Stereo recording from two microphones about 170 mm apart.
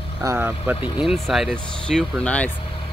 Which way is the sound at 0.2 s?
15° right (ahead or behind).